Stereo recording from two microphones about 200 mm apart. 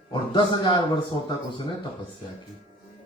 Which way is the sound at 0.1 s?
25° left (ahead or behind).